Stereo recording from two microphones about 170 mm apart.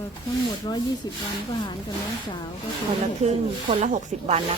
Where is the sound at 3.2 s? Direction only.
40° right (ahead or behind).